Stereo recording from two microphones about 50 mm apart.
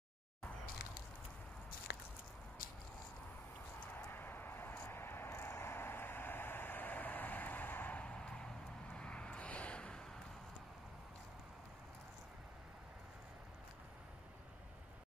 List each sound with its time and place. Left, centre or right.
3.8 s vehicle: left
8.0 s vehicle: centre